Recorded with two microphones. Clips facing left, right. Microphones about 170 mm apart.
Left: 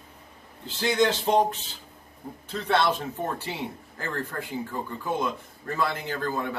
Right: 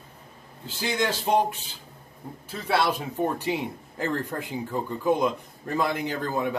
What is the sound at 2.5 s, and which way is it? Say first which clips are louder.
A man's voice: left 1 dB; 10° right (ahead or behind).